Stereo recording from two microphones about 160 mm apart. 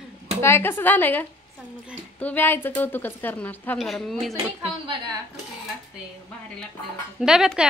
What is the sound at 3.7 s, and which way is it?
Speech, centre (ahead or behind).